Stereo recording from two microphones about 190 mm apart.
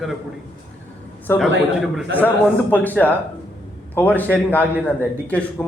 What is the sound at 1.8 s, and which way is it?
Speech, 5° right (ahead or behind).